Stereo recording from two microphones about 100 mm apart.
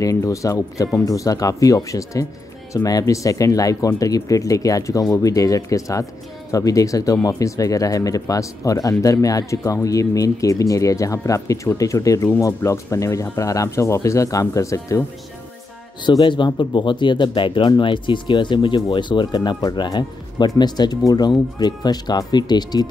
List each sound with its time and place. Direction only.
0.0 s speech: 30° left (ahead or behind)
16.1 s speech: 50° left (ahead or behind)